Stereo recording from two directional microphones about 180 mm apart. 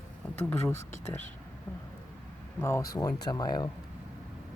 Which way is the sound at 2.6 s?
15° left (ahead or behind).